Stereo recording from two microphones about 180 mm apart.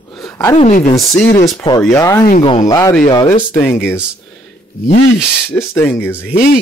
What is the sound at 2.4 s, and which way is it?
Speech, 25° left (ahead or behind).